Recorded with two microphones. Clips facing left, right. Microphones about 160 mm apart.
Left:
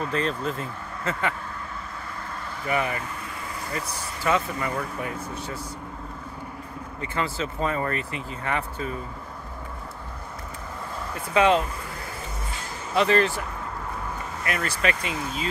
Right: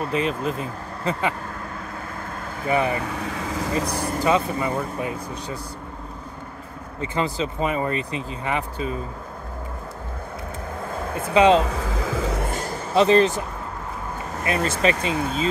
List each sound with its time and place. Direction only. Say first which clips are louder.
0.1 s speech: right 3 dB; 10° right (ahead or behind)
2.6 s speech: right 5 dB; 25° right (ahead or behind)
3.1 s vehicle: right 7 dB; 90° right
4.2 s speech: right 3 dB; 20° right (ahead or behind)
7.0 s speech: right 4 dB; 20° right (ahead or behind)
10.9 s vehicle: right 5 dB; 50° right (ahead or behind)
11.3 s speech: right 4 dB; 20° right (ahead or behind)
11.6 s a sound: right 8 dB; 90° right
12.9 s speech: right 5 dB; 25° right (ahead or behind)